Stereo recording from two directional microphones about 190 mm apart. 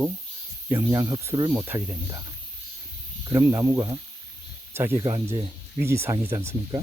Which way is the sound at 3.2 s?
15° right (ahead or behind).